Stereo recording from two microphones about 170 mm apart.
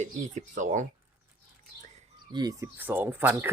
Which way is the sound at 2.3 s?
20° right (ahead or behind).